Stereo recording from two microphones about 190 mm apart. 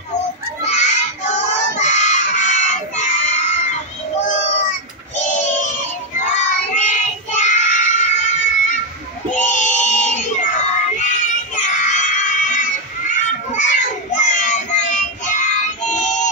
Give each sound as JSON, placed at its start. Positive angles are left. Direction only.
{"t": 0.7, "sound": "child singing", "side_deg": 40}
{"t": 5.1, "sound": "child singing", "side_deg": 40}